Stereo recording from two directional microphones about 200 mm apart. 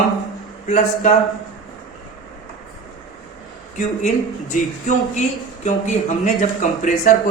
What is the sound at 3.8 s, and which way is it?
Speech, 35° left (ahead or behind).